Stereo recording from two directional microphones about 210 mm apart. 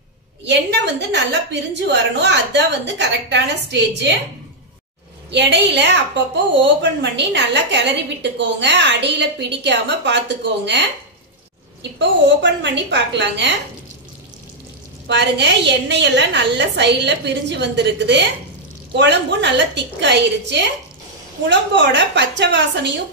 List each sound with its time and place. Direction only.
0.5 s a woman's voice: 55° right (ahead or behind)
5.3 s a woman's voice: 55° right (ahead or behind)
12.0 s a woman's voice: 55° right (ahead or behind)
15.0 s a woman's voice: 55° right (ahead or behind)